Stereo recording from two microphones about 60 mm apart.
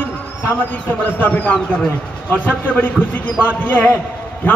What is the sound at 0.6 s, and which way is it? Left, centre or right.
A man's voice, left.